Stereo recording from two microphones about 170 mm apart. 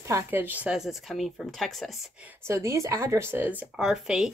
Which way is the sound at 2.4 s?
15° right (ahead or behind).